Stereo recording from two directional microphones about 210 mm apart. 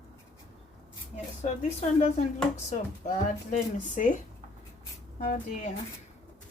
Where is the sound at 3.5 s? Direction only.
40° left (ahead or behind).